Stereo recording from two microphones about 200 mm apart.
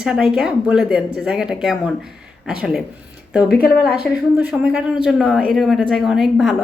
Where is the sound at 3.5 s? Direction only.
50° left (ahead or behind).